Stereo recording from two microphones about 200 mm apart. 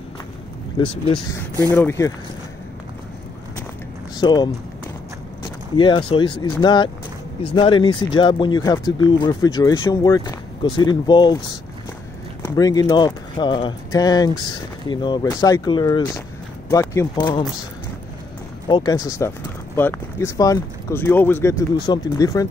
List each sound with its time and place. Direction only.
1.7 s speech: 10° left (ahead or behind)
4.2 s speech: 20° left (ahead or behind)
5.8 s speech: 25° left (ahead or behind)
12.4 s speech: 20° left (ahead or behind)
18.7 s speech: 20° left (ahead or behind)